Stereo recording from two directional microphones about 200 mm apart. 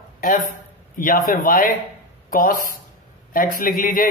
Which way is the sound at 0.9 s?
45° left (ahead or behind).